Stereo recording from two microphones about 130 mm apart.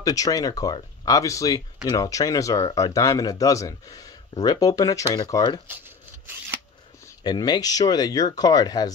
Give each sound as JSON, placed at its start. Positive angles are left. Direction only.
{"t": 0.0, "sound": "speech", "side_deg": 25}
{"t": 5.7, "sound": "shuffling cards", "side_deg": -15}
{"t": 7.2, "sound": "speech", "side_deg": 30}